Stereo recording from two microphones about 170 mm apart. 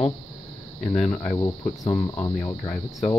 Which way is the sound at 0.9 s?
5° left (ahead or behind).